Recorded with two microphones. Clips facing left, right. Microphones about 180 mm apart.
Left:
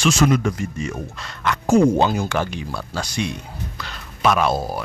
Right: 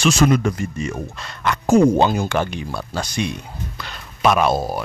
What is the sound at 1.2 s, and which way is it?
Speech, 20° right (ahead or behind).